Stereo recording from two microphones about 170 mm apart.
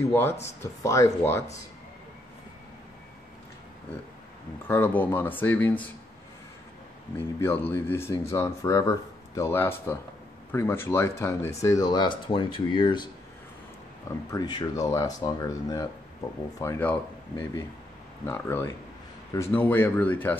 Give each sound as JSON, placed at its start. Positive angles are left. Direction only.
{"t": 0.0, "sound": "speech", "side_deg": 15}
{"t": 4.6, "sound": "speech", "side_deg": 10}
{"t": 7.3, "sound": "speech", "side_deg": 15}
{"t": 14.3, "sound": "speech", "side_deg": 25}